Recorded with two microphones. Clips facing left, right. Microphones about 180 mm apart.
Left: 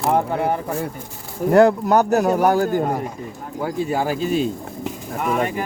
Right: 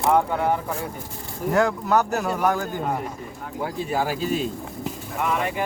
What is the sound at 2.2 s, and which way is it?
Speech, 35° left (ahead or behind).